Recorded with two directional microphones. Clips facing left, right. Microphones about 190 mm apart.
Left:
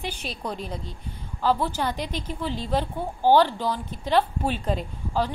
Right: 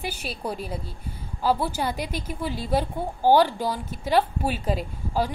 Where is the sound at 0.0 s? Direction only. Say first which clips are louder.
Right 1 dB; 5° right (ahead or behind).